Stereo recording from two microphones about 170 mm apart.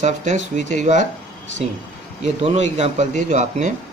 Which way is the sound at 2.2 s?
40° right (ahead or behind).